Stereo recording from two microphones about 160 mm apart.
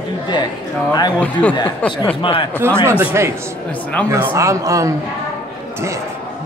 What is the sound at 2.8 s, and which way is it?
A man's voice, 15° right (ahead or behind).